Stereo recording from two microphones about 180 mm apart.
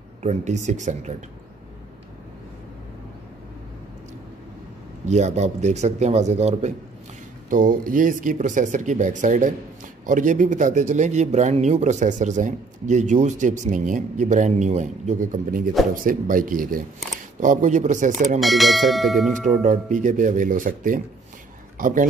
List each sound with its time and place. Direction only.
0.2 s speech: 40° right (ahead or behind)
5.0 s speech: 40° right (ahead or behind)
7.4 s speech: 50° right (ahead or behind)
18.4 s speech: centre (ahead or behind)
19.4 s speech: 45° right (ahead or behind)